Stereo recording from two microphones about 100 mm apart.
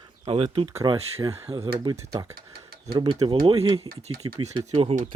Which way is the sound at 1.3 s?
90° right.